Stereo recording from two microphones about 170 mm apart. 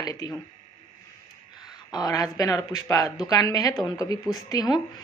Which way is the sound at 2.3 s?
20° left (ahead or behind).